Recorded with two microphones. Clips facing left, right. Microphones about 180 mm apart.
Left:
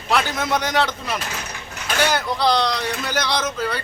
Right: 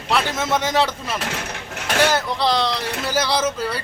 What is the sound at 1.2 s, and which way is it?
Speech, 65° right (ahead or behind).